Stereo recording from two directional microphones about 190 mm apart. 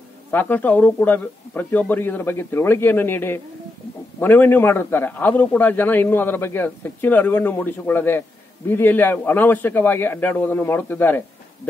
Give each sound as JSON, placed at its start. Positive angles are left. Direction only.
{"t": 0.3, "sound": "a man's voice", "side_deg": 10}